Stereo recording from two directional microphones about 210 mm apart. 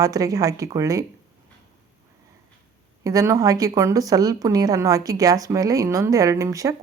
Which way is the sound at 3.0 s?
15° right (ahead or behind).